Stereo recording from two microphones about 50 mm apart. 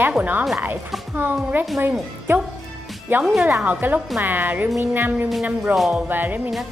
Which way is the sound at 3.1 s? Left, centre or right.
Right.